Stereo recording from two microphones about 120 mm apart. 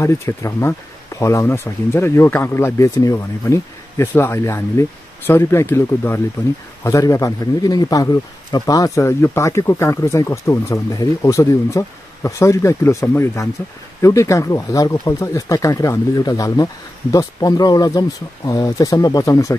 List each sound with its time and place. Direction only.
0.0 s a man's voice: 25° left (ahead or behind)